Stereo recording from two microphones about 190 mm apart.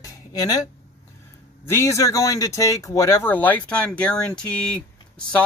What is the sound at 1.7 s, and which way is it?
Speech, 15° left (ahead or behind).